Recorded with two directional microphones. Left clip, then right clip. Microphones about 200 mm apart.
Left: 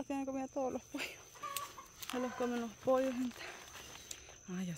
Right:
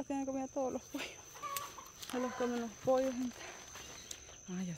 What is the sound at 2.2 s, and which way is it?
Speech, 15° left (ahead or behind).